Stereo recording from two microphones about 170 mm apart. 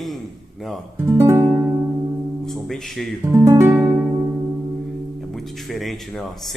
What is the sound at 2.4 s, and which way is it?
Speech, centre (ahead or behind).